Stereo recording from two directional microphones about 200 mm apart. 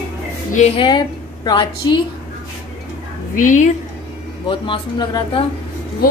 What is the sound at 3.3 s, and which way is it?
Speech, 40° left (ahead or behind).